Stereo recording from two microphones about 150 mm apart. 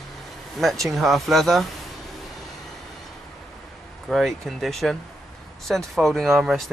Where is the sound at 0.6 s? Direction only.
Centre (ahead or behind).